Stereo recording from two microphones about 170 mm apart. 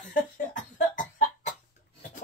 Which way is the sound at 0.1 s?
50° left (ahead or behind).